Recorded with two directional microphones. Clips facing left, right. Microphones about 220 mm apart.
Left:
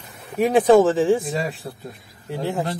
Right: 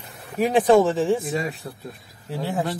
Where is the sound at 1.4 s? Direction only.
30° left (ahead or behind).